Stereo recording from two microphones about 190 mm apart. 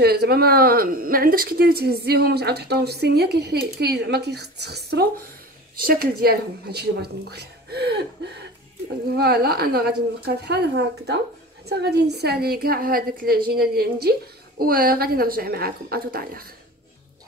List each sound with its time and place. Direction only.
0.0 s a woman's voice: 55° right (ahead or behind)